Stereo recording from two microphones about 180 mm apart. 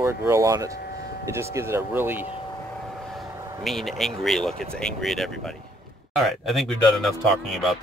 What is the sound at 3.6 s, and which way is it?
Speech, centre (ahead or behind).